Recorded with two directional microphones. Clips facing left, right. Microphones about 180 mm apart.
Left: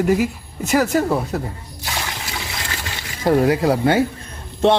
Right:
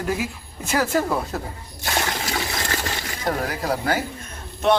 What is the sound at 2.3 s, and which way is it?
Water, 45° right (ahead or behind).